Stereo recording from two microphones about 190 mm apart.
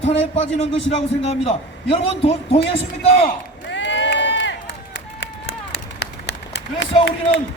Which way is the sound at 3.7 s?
70° left (ahead or behind).